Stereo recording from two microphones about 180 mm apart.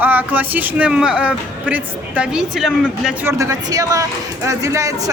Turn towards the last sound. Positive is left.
turn(degrees=-15)  # may be behind; listen again after turning